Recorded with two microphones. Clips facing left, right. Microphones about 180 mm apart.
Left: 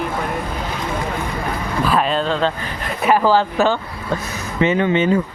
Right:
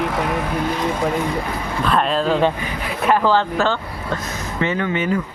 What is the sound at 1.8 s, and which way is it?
Speech, centre (ahead or behind).